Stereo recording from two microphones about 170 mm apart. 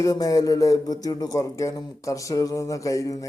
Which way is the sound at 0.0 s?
20° left (ahead or behind).